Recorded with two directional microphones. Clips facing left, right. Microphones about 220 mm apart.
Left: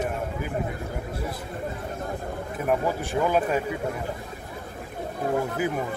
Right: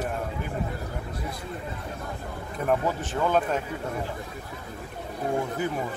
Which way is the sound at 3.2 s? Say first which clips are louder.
Left 1 dB; 10° left (ahead or behind).